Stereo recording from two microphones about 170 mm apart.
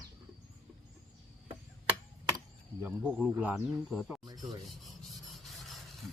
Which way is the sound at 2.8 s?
10° right (ahead or behind).